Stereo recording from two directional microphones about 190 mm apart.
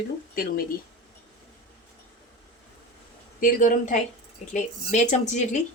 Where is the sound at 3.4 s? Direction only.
45° left (ahead or behind).